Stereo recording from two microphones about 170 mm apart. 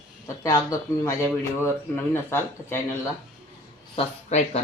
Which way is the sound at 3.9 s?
40° left (ahead or behind).